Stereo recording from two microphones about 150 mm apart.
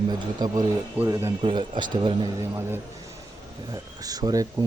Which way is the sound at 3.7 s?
25° right (ahead or behind).